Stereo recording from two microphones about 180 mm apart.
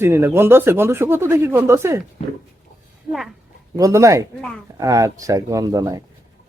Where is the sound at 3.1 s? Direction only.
Centre (ahead or behind).